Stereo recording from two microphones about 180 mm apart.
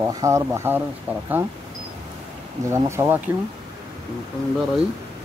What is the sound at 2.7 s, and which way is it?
Speech, 15° right (ahead or behind).